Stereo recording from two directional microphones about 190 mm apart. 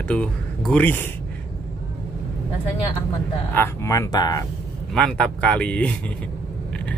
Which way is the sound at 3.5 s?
15° left (ahead or behind).